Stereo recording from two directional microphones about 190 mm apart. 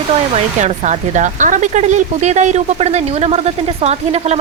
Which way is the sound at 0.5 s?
40° right (ahead or behind).